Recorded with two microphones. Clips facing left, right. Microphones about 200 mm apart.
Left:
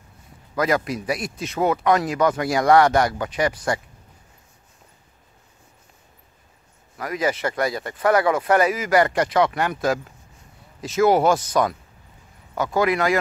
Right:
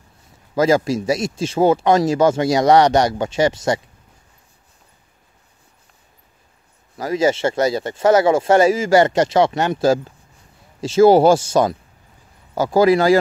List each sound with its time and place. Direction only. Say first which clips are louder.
0.6 s speech: right 6 dB; 25° right (ahead or behind)
7.0 s speech: right 6 dB; 25° right (ahead or behind)